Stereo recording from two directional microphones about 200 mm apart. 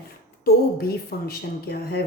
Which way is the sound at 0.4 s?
50° left (ahead or behind).